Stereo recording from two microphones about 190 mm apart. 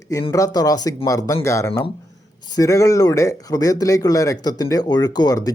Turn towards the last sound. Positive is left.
turn(degrees=20)  # may be behind; listen again after turning